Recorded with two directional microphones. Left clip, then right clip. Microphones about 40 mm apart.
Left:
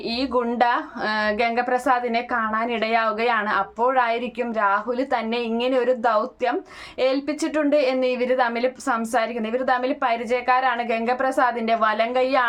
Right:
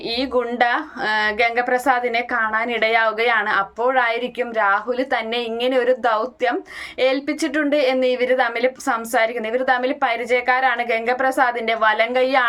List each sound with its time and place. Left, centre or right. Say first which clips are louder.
0.2 s a woman's voice: right 2 dB; left
8.6 s a woman's voice: right 3 dB; centre